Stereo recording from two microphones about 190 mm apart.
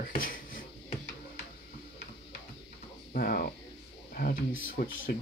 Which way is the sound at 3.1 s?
50° left (ahead or behind).